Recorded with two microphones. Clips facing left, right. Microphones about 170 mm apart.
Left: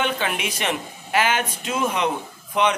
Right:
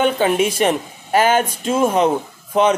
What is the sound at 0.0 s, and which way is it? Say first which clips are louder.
Speech: right 9 dB; 40° right (ahead or behind).